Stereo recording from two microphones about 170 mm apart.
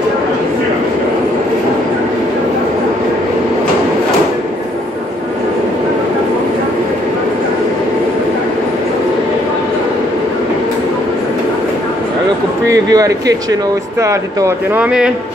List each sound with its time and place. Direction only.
12.9 s speech: 20° right (ahead or behind)
14.8 s a man's voice: 5° right (ahead or behind)